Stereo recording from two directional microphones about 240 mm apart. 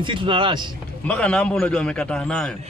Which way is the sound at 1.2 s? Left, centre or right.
Centre.